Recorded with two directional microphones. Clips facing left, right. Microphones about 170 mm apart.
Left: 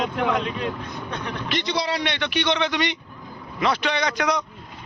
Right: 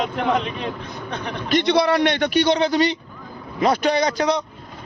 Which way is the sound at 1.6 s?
60° right (ahead or behind).